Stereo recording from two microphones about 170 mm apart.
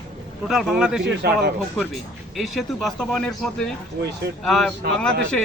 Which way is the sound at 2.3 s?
Centre (ahead or behind).